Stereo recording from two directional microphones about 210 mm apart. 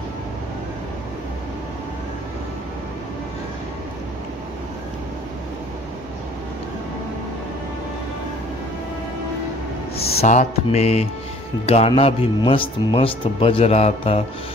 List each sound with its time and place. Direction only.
9.9 s speech: 30° left (ahead or behind)